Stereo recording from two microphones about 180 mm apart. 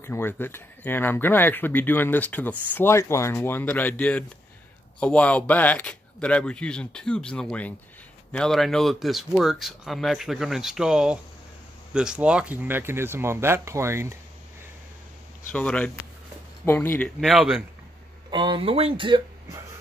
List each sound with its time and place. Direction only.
0.0 s speech: 10° left (ahead or behind); by 14.1 s 15° right (ahead or behind)
15.5 s speech: 5° left (ahead or behind)
17.2 s speech: centre (ahead or behind)
18.3 s speech: 25° right (ahead or behind)